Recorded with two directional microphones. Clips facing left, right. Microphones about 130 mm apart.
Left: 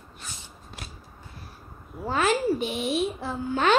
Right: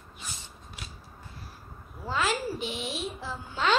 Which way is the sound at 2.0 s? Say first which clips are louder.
Left 6 dB; 55° left (ahead or behind).